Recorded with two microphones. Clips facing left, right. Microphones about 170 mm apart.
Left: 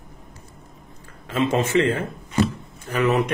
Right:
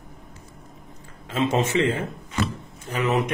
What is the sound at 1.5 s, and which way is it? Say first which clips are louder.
A man's voice: left 2 dB; 20° right (ahead or behind).